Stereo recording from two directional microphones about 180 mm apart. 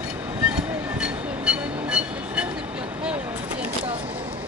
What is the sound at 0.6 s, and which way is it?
Train, 5° right (ahead or behind).